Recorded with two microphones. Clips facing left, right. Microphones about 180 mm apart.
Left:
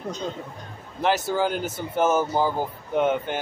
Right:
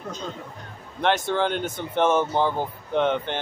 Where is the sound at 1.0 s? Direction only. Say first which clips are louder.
Even; 5° left (ahead or behind).